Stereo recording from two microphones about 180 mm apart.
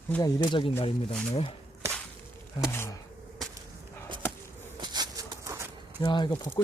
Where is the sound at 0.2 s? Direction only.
25° left (ahead or behind).